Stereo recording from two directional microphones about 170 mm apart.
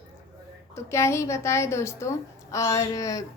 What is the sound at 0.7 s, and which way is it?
A woman's voice, 15° left (ahead or behind).